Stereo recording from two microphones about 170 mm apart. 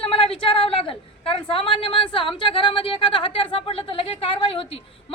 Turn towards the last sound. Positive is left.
turn(degrees=35)  # may be behind; listen again after turning